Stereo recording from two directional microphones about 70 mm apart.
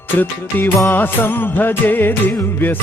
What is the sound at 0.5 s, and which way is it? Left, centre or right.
Music, left.